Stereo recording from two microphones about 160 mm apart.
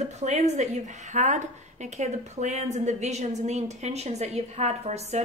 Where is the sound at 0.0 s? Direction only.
45° right (ahead or behind).